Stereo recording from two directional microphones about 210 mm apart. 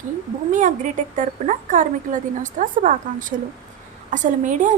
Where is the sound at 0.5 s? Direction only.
35° right (ahead or behind).